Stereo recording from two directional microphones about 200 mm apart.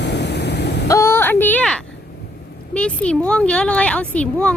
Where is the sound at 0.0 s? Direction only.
60° left (ahead or behind).